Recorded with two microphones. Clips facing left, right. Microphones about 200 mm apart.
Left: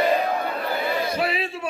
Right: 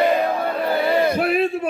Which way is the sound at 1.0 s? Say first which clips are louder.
Right 7 dB; 55° right (ahead or behind).